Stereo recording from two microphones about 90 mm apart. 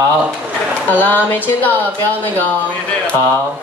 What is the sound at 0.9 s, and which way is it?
Speech, 20° left (ahead or behind).